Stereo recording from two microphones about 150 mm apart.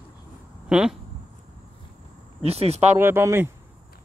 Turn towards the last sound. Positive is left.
turn(degrees=-15)  # may be behind; listen again after turning